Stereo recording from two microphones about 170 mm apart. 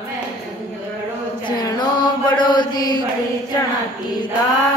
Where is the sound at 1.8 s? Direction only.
25° left (ahead or behind).